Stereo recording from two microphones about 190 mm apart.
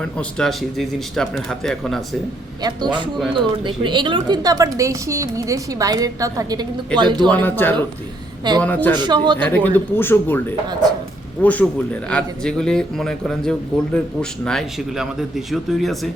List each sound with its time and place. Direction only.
0.0 s a man's voice: 5° left (ahead or behind)
2.6 s a woman's voice: 20° right (ahead or behind)
7.3 s speech: 10° left (ahead or behind)
9.0 s a woman's voice: 25° right (ahead or behind)
9.4 s a man's voice: 10° left (ahead or behind)